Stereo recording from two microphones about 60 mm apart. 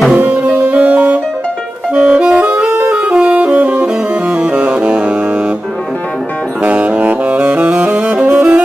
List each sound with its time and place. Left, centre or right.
0.1 s music: right
6.6 s saxophone: right